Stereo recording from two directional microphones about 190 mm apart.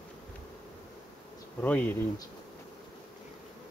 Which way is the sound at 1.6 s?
10° left (ahead or behind).